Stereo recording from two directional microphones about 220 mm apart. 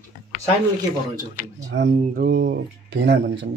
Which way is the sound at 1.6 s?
55° right (ahead or behind).